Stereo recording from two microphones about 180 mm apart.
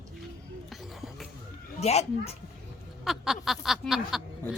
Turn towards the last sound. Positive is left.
turn(degrees=0)  # may be behind; listen again after turning